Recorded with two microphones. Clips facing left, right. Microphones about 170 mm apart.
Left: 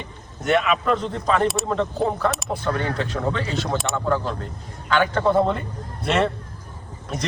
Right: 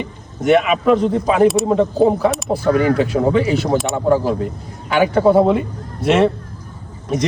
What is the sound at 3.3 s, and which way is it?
A man's voice, 10° right (ahead or behind).